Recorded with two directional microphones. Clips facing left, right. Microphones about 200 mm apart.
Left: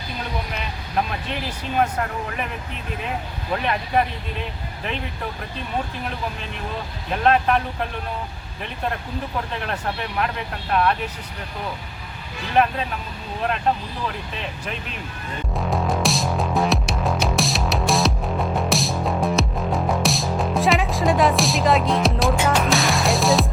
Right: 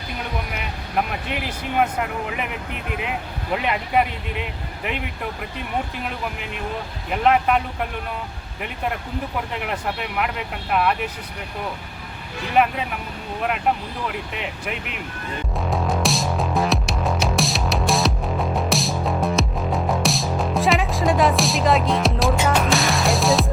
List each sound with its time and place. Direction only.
0.5 s vehicle: 10° right (ahead or behind)
1.8 s speech: 15° right (ahead or behind)
3.5 s speech: 15° right (ahead or behind)
7.1 s speech: 10° right (ahead or behind)
9.6 s speech: 10° right (ahead or behind)
15.5 s music: centre (ahead or behind)